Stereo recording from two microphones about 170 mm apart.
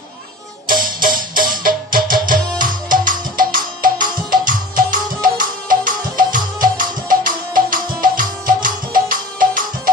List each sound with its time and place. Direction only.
0.7 s music: 55° right (ahead or behind)